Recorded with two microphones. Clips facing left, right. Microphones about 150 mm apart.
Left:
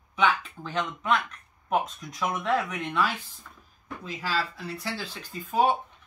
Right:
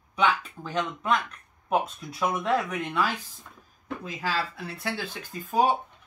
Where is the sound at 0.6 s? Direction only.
10° right (ahead or behind).